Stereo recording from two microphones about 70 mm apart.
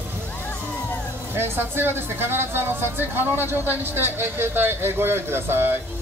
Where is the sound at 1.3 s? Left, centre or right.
Right.